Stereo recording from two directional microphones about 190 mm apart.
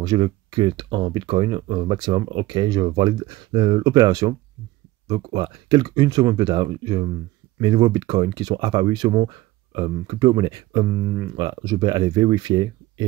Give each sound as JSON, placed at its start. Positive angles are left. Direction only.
{"t": 0.0, "sound": "speech", "side_deg": -20}